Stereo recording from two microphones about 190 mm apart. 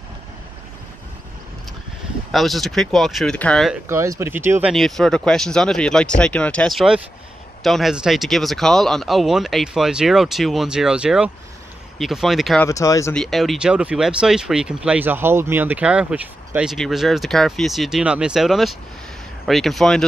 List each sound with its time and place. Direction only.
2.3 s speech: centre (ahead or behind)
3.9 s speech: 15° right (ahead or behind)
12.6 s speech: 15° left (ahead or behind)
13.1 s speech: centre (ahead or behind)